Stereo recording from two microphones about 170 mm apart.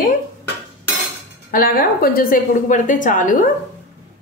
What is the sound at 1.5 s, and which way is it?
A woman's voice, 60° left (ahead or behind).